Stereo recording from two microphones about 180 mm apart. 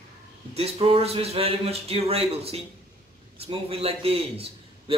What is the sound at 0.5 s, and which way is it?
A man's voice, 35° right (ahead or behind).